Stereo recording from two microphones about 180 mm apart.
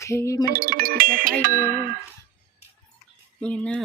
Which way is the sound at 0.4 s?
55° right (ahead or behind).